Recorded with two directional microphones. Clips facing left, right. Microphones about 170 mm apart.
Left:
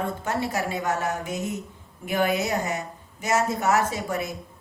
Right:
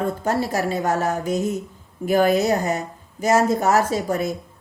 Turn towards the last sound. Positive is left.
turn(degrees=-40)  # may be behind; listen again after turning